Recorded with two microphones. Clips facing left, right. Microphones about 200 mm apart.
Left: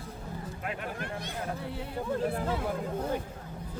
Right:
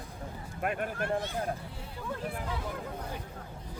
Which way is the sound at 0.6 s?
55° right (ahead or behind).